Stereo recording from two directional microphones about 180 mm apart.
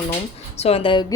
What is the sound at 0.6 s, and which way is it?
Speech, 35° left (ahead or behind).